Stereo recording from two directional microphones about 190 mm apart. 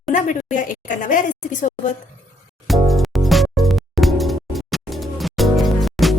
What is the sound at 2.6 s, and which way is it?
Music, centre (ahead or behind).